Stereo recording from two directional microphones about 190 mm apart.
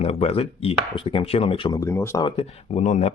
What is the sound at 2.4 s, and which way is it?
Speech, 30° left (ahead or behind).